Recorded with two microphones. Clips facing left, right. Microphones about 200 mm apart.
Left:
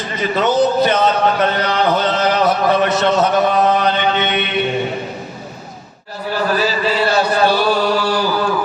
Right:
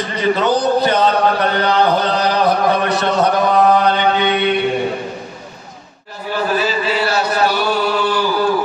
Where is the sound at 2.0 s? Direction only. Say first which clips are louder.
Even; 20° left (ahead or behind).